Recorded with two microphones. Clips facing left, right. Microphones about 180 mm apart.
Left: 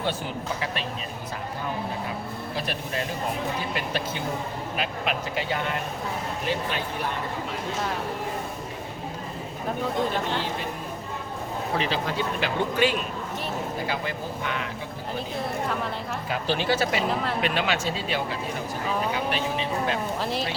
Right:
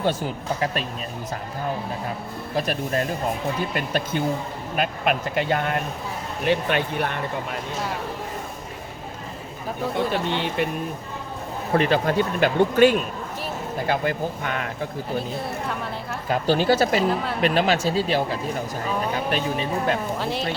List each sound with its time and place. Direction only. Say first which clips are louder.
0.6 s speech: right 5 dB; 45° right (ahead or behind)
2.6 s speech: right 7 dB; 45° right (ahead or behind)
6.4 s speech: right 9 dB; 65° right (ahead or behind)
10.2 s speech: right 5 dB; 70° right (ahead or behind)
11.7 s speech: right 8 dB; 55° right (ahead or behind)
16.3 s speech: right 6 dB; 40° right (ahead or behind)
20.1 s speech: right 2 dB; centre (ahead or behind)